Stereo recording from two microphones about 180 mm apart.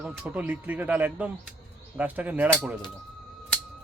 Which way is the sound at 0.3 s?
10° right (ahead or behind).